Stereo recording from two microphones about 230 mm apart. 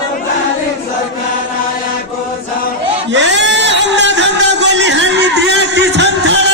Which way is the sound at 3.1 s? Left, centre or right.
Right.